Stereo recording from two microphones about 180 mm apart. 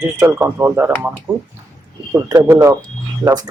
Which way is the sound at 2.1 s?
20° right (ahead or behind).